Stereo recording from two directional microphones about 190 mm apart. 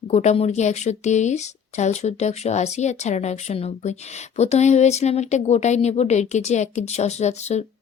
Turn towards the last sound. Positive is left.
turn(degrees=35)  # may be behind; listen again after turning